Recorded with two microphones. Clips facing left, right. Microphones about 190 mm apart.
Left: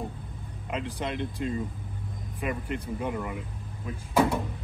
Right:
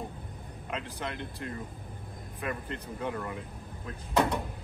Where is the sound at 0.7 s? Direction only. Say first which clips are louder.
Left 5 dB; 15° left (ahead or behind).